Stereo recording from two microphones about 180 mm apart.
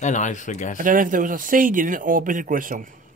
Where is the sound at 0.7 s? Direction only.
50° right (ahead or behind).